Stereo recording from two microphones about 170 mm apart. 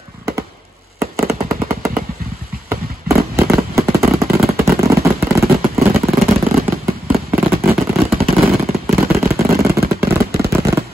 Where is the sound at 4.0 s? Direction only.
Centre (ahead or behind).